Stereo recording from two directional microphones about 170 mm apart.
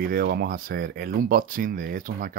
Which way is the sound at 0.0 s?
60° right (ahead or behind).